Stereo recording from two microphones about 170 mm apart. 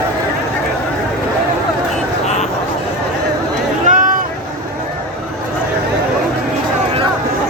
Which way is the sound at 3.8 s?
50° right (ahead or behind).